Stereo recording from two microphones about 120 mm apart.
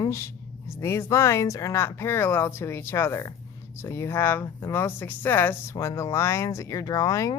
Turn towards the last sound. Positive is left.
turn(degrees=30)  # may be behind; listen again after turning